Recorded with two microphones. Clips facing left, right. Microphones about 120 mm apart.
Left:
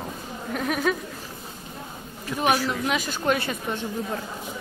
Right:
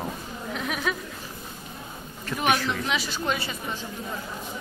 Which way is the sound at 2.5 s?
10° left (ahead or behind).